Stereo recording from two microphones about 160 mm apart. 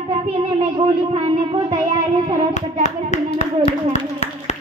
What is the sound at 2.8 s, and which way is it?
Clapping, 45° left (ahead or behind).